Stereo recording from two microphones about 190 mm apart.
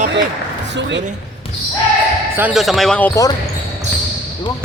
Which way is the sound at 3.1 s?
20° left (ahead or behind).